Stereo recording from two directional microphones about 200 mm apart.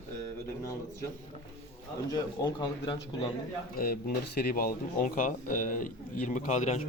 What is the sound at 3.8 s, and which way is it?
Speech, 50° left (ahead or behind).